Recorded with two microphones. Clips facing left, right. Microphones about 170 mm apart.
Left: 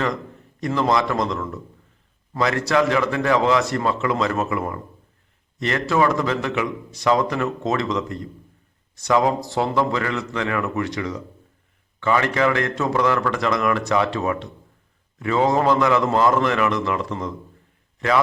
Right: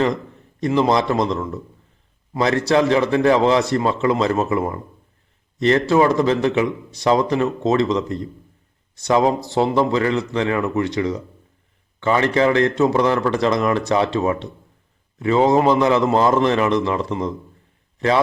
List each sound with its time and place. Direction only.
0.6 s a man's voice: 25° right (ahead or behind)